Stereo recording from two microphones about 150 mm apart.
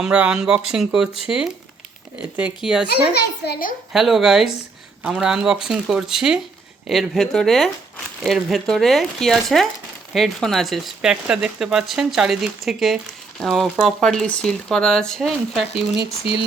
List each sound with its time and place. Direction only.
0.0 s a child's voice: 5° right (ahead or behind)
3.2 s a child's voice: 90° left
3.9 s speech: centre (ahead or behind)